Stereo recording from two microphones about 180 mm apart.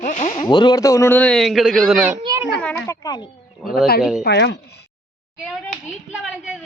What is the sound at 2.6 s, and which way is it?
Speech, 15° left (ahead or behind).